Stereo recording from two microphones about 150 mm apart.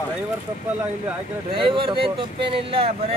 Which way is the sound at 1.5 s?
35° right (ahead or behind).